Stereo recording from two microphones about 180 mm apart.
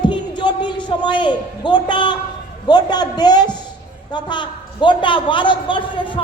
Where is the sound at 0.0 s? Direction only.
25° left (ahead or behind).